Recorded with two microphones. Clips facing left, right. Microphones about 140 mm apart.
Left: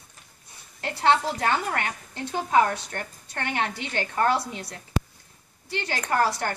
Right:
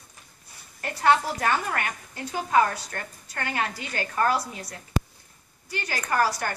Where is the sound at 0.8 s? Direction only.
25° left (ahead or behind).